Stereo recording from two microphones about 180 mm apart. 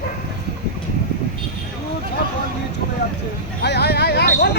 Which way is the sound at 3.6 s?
65° left (ahead or behind).